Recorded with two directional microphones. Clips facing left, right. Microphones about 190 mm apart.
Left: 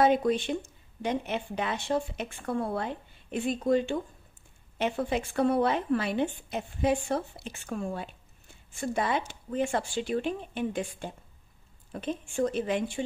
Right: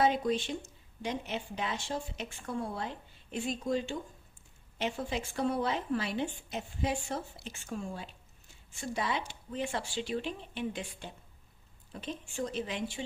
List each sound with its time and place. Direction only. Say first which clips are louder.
0.0 s speech: left 5 dB; 55° left (ahead or behind)